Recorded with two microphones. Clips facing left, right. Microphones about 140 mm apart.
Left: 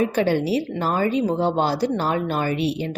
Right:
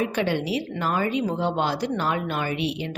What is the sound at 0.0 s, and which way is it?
Speech, 35° left (ahead or behind).